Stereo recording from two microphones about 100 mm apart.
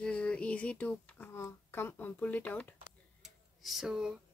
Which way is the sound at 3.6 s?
Centre (ahead or behind).